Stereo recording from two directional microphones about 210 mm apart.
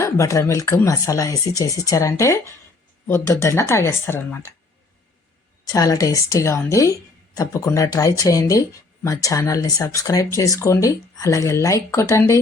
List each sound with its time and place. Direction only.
0.0 s speech: 15° left (ahead or behind)
5.6 s speech: 15° left (ahead or behind)